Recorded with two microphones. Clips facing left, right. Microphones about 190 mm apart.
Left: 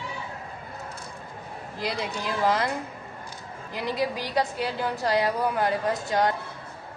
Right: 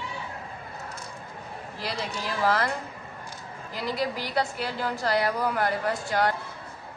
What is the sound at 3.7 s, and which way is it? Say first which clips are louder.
A woman's voice: left 2 dB; 15° left (ahead or behind).